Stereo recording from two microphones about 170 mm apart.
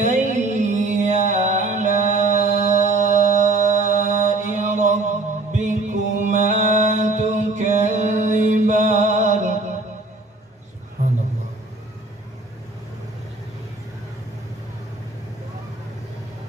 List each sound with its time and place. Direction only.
0.0 s music: 45° right (ahead or behind)
3.0 s mantra: 45° right (ahead or behind)
5.5 s music: 45° right (ahead or behind)